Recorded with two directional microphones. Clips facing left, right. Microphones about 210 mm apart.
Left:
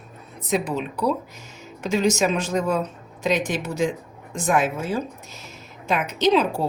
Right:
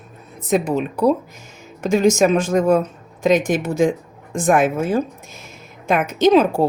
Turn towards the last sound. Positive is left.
turn(degrees=-50)  # may be behind; listen again after turning